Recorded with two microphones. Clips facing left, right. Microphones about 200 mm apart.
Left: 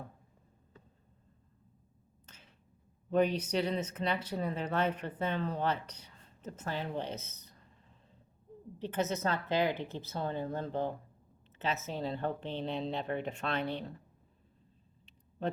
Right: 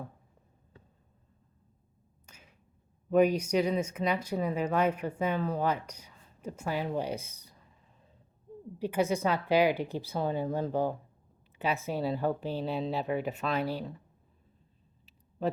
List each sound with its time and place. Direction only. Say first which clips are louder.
2.2 s a sound: right 2 dB; 10° right (ahead or behind)
3.1 s speech: right 5 dB; 10° right (ahead or behind)
8.8 s speech: right 5 dB; 10° right (ahead or behind)
10.7 s speech: right 4 dB; 40° right (ahead or behind)
11.6 s speech: right 5 dB; 10° right (ahead or behind)